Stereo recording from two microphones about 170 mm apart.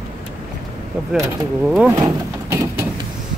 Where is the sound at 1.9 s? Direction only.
20° right (ahead or behind).